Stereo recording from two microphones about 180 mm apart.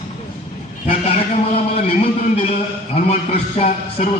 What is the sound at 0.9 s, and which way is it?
A man's voice, 35° left (ahead or behind).